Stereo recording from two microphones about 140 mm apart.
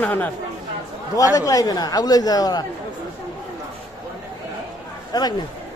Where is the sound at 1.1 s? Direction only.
25° left (ahead or behind).